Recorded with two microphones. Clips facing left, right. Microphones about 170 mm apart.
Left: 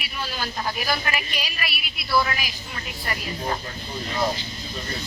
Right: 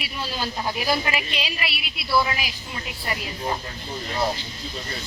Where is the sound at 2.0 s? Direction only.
5° right (ahead or behind).